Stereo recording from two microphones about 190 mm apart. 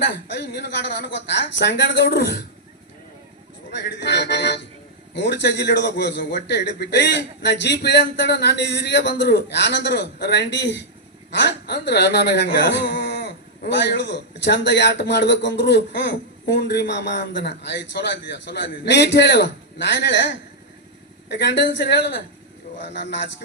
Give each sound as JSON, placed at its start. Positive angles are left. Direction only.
{"t": 0.0, "sound": "speech", "side_deg": 65}
{"t": 3.7, "sound": "a man's voice", "side_deg": 65}